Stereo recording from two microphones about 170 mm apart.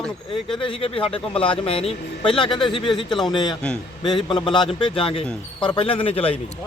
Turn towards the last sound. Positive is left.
turn(degrees=35)  # may be behind; listen again after turning